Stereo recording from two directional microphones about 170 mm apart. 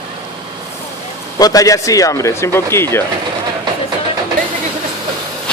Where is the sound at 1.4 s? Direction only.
20° left (ahead or behind).